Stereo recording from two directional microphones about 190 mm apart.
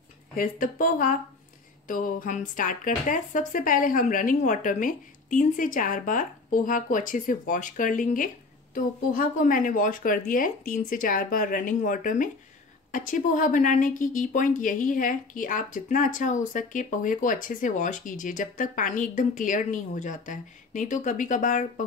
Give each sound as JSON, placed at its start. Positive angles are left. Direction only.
{"t": 0.4, "sound": "a woman's voice", "side_deg": 45}